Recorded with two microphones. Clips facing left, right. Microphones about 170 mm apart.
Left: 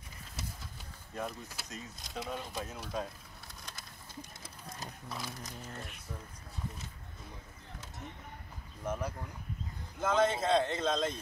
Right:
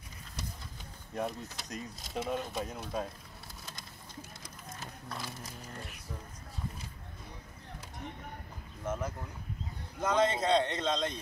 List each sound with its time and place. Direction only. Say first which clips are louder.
1.2 s speech: right 4 dB; centre (ahead or behind)
3.6 s bird: right 1 dB; 5° right (ahead or behind)
4.4 s a sound: even; 35° left (ahead or behind)
5.1 s speech: even; centre (ahead or behind)
8.8 s speech: right 1 dB; 10° left (ahead or behind)